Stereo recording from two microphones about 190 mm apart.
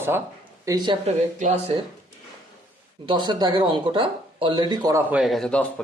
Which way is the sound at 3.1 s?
25° right (ahead or behind).